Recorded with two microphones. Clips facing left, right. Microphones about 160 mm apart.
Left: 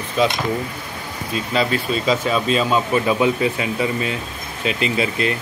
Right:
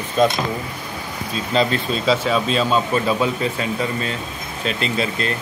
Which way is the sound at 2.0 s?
5° left (ahead or behind).